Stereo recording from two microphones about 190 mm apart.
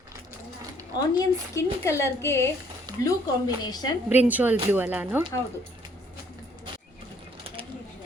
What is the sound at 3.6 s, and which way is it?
Speech, 20° left (ahead or behind).